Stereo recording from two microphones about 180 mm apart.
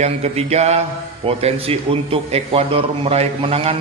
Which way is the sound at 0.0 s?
35° right (ahead or behind).